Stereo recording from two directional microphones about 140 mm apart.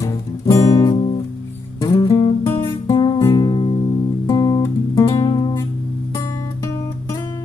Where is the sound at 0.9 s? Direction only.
40° left (ahead or behind).